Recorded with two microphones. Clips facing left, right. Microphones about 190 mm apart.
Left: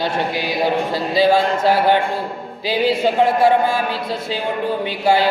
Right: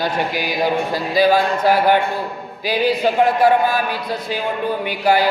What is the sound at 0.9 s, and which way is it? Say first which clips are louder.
Chant: even; 25° left (ahead or behind).